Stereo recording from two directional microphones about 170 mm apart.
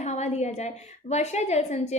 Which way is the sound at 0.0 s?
40° left (ahead or behind).